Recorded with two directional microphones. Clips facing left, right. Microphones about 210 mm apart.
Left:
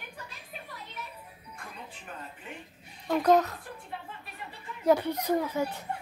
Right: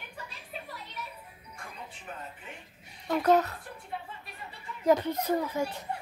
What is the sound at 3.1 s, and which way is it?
Speech, 5° right (ahead or behind).